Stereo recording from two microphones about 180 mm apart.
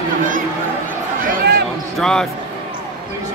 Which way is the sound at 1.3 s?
60° right (ahead or behind).